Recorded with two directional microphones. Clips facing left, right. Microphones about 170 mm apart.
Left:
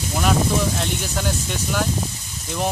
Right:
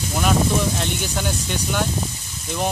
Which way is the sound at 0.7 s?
Centre (ahead or behind).